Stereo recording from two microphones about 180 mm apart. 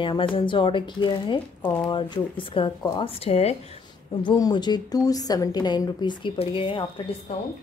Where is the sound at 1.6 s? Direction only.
10° left (ahead or behind).